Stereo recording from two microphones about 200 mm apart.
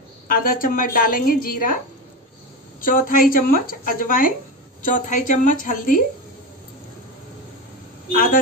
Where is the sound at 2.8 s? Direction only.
45° left (ahead or behind).